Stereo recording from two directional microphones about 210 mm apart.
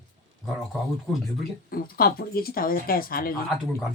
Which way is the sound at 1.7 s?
45° left (ahead or behind).